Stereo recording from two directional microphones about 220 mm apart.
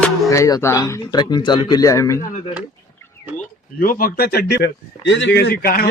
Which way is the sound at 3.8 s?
40° left (ahead or behind).